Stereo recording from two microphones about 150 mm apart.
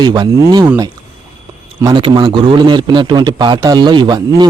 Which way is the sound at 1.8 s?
30° right (ahead or behind).